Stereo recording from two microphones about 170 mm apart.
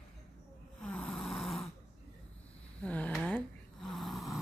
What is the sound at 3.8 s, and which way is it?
Snoring, centre (ahead or behind).